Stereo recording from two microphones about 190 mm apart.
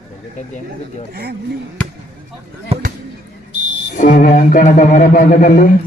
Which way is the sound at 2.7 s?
30° right (ahead or behind).